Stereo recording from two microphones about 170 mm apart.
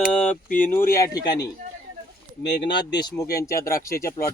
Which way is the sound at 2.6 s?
90° left.